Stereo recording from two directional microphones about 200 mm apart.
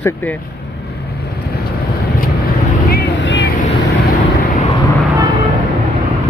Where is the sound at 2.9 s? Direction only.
60° left (ahead or behind).